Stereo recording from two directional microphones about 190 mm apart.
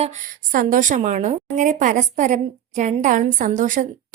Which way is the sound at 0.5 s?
45° right (ahead or behind).